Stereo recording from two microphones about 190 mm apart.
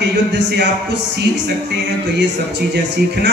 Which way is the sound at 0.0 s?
65° right (ahead or behind).